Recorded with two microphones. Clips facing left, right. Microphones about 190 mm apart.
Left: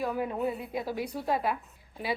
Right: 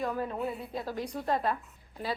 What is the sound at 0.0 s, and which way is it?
A woman's voice, 5° left (ahead or behind).